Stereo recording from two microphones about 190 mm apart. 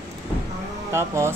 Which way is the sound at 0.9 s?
15° right (ahead or behind).